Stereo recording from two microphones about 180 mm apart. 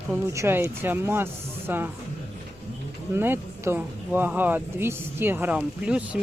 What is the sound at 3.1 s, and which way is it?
Speech, 15° right (ahead or behind).